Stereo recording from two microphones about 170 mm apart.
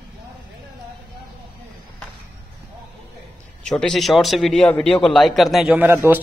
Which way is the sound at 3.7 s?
5° left (ahead or behind).